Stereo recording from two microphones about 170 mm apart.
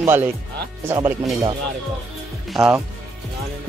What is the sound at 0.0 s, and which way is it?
Speech, 15° right (ahead or behind).